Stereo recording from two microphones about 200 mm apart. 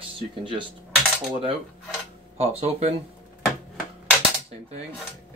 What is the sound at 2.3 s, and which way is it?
Speech, 30° right (ahead or behind).